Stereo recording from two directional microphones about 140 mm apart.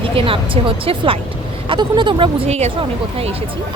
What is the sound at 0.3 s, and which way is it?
A woman's voice, 40° right (ahead or behind).